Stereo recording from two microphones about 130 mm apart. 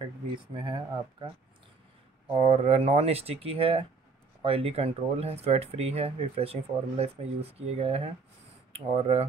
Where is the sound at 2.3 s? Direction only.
50° right (ahead or behind).